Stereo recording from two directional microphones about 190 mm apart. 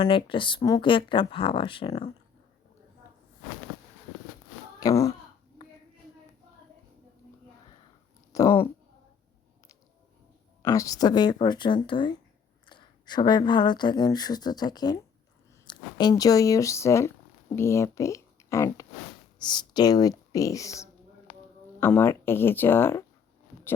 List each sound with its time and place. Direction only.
0.0 s speech: 25° left (ahead or behind)
4.8 s speech: 15° left (ahead or behind)
8.3 s speech: 15° left (ahead or behind)
10.6 s speech: 15° left (ahead or behind)